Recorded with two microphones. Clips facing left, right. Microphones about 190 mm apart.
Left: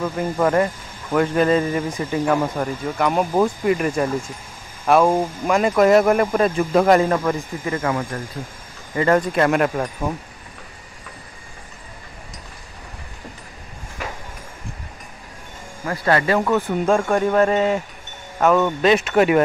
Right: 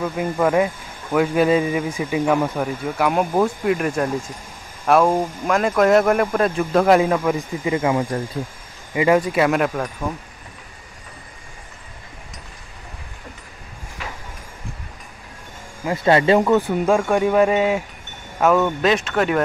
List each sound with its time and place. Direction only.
0.0 s a man's voice: centre (ahead or behind)
7.3 s a man's voice: 15° right (ahead or behind); by 9.8 s centre (ahead or behind)
10.1 s speech: 15° left (ahead or behind)
15.8 s speech: 20° right (ahead or behind)
16.8 s a man's voice: centre (ahead or behind)